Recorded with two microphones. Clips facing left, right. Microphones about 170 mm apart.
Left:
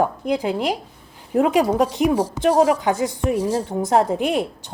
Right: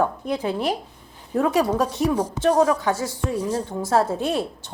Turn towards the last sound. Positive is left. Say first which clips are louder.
# left 3 dB
turn(degrees=15)  # may be behind; listen again after turning